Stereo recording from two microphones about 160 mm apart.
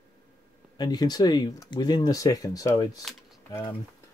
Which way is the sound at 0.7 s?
25° left (ahead or behind).